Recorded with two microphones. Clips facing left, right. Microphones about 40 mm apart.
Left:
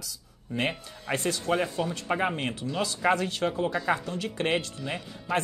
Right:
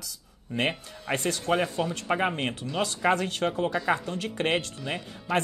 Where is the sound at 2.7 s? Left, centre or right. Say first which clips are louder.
Even; right.